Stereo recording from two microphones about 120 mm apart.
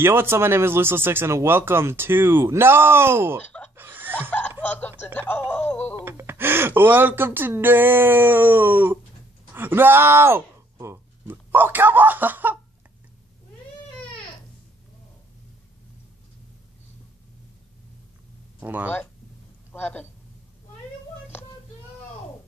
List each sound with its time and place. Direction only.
0.0 s speech: 20° right (ahead or behind)
3.4 s chicken: 10° left (ahead or behind)
3.7 s a sound: 15° right (ahead or behind)
4.6 s a sound: 15° left (ahead or behind)
5.0 s speech: 15° left (ahead or behind)
5.5 s music: 15° left (ahead or behind)
5.9 s speech: 20° right (ahead or behind)
18.6 s speech: 15° right (ahead or behind)
19.7 s speech: 15° left (ahead or behind)